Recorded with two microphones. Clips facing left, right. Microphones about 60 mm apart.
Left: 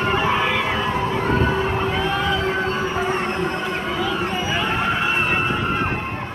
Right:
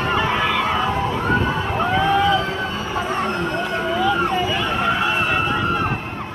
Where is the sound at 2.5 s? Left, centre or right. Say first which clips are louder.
Left 3 dB; left.